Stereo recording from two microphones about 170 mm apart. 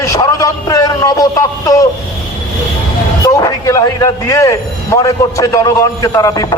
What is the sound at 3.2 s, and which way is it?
A man's voice, 20° left (ahead or behind).